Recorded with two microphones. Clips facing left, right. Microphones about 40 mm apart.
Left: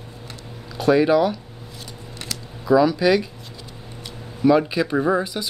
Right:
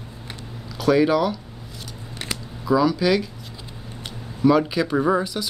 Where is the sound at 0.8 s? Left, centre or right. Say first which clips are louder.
Left 2 dB; centre.